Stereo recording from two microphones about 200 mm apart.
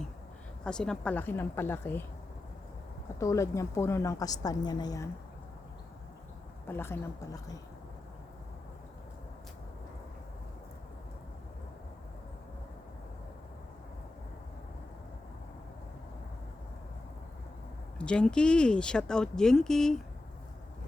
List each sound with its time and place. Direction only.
0.6 s a woman's voice: 5° left (ahead or behind)
3.2 s a woman's voice: 15° left (ahead or behind)
6.7 s a woman's voice: 10° left (ahead or behind)
17.9 s speech: 5° left (ahead or behind)